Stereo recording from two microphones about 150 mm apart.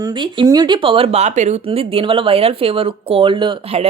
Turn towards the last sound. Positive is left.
turn(degrees=-35)  # may be behind; listen again after turning